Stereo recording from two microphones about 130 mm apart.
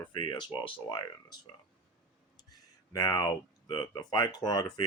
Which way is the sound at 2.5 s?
30° left (ahead or behind).